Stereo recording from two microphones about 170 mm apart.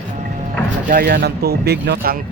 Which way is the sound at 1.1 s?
70° right (ahead or behind).